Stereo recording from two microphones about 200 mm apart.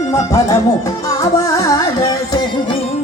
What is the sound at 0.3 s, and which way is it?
Music, 15° left (ahead or behind).